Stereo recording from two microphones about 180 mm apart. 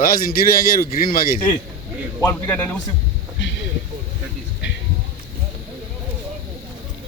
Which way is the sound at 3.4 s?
90° left.